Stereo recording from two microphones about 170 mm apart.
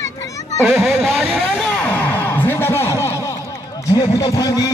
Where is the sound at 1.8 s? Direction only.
10° left (ahead or behind).